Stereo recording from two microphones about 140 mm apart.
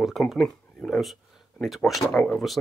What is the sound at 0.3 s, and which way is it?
Speech, 5° left (ahead or behind).